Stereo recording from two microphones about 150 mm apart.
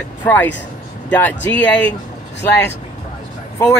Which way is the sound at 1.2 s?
10° left (ahead or behind).